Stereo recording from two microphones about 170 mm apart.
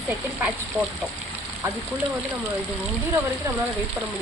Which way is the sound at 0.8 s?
5° right (ahead or behind).